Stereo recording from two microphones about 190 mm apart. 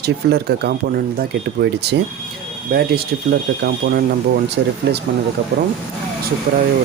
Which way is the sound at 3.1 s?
60° right (ahead or behind).